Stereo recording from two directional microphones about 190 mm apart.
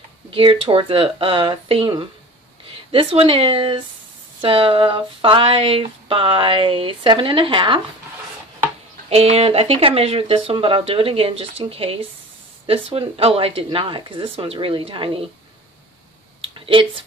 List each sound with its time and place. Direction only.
0.3 s speech: 25° right (ahead or behind)
9.1 s speech: 30° right (ahead or behind)
16.3 s a sound: 30° right (ahead or behind)